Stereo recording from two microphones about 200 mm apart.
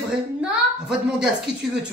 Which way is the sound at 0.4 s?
5° right (ahead or behind).